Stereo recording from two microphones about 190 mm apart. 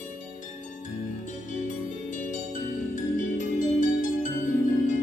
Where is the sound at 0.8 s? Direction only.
40° left (ahead or behind).